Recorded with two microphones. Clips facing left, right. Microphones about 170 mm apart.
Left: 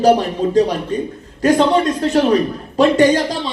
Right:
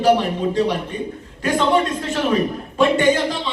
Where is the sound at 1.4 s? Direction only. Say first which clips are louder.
Left 5 dB; 40° left (ahead or behind).